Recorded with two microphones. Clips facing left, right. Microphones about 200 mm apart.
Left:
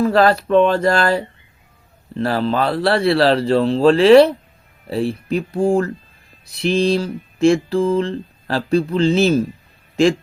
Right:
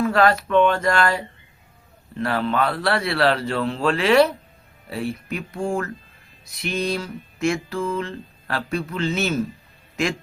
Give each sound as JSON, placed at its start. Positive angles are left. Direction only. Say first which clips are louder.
{"t": 0.0, "sound": "mantra", "louder": "left 4 dB", "side_deg": 35}
{"t": 9.9, "sound": "speech", "louder": "left 10 dB", "side_deg": 30}